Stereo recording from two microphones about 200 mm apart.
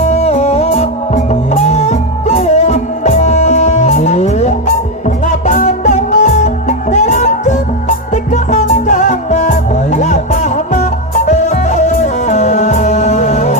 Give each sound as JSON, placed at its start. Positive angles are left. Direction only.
{"t": 0.0, "sound": "music", "side_deg": 35}